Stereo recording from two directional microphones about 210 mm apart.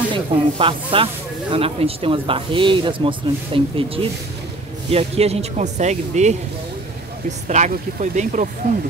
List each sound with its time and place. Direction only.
0.1 s speech: 25° right (ahead or behind)